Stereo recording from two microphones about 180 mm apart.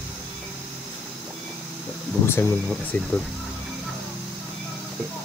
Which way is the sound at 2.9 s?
10° left (ahead or behind).